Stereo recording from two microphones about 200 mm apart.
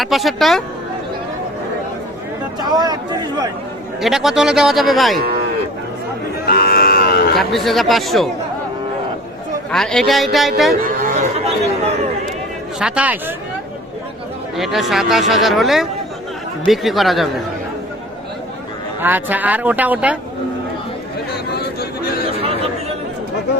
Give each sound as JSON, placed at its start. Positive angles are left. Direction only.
{"t": 0.0, "sound": "speech", "side_deg": 0}
{"t": 2.6, "sound": "speech", "side_deg": -20}
{"t": 4.0, "sound": "speech", "side_deg": 0}
{"t": 6.4, "sound": "cattle", "side_deg": 50}
{"t": 7.3, "sound": "speech", "side_deg": 0}
{"t": 9.7, "sound": "speech", "side_deg": 5}
{"t": 10.8, "sound": "chatter", "side_deg": -45}
{"t": 11.3, "sound": "chatter", "side_deg": -30}
{"t": 12.8, "sound": "speech", "side_deg": -5}
{"t": 14.5, "sound": "speech", "side_deg": 0}
{"t": 19.0, "sound": "speech", "side_deg": -10}
{"t": 21.5, "sound": "a sound", "side_deg": 50}